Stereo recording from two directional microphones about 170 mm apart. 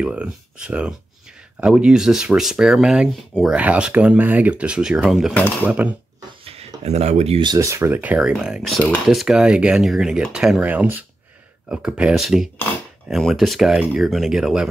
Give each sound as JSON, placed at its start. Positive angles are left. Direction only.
{"t": 0.0, "sound": "speech", "side_deg": -5}
{"t": 5.3, "sound": "speech", "side_deg": 10}
{"t": 5.7, "sound": "speech", "side_deg": -10}
{"t": 6.4, "sound": "speech", "side_deg": -35}
{"t": 7.5, "sound": "speech", "side_deg": -20}